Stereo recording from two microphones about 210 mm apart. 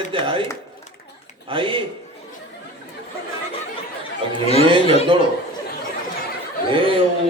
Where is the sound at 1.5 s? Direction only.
25° right (ahead or behind).